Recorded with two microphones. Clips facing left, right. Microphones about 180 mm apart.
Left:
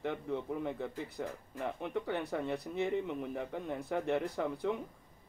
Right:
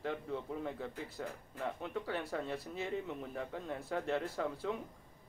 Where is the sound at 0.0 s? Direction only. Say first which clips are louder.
Left 3 dB; 20° left (ahead or behind).